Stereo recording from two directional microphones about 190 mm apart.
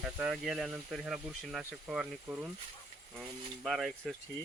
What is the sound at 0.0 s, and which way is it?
Speech, centre (ahead or behind).